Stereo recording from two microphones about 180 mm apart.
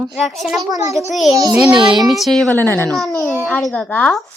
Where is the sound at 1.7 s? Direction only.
25° right (ahead or behind).